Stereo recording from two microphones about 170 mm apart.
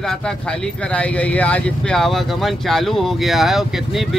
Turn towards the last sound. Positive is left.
turn(degrees=0)  # may be behind; listen again after turning